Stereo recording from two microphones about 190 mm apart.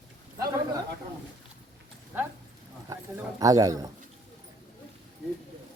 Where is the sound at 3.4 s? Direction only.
20° right (ahead or behind).